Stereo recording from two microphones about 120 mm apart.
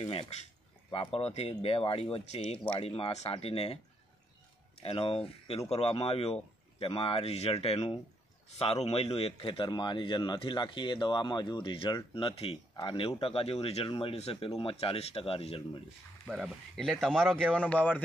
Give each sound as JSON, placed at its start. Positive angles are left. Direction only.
{"t": 0.0, "sound": "a man's voice", "side_deg": 55}
{"t": 16.3, "sound": "speech", "side_deg": 5}